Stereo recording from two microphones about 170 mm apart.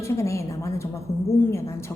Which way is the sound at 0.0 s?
15° left (ahead or behind).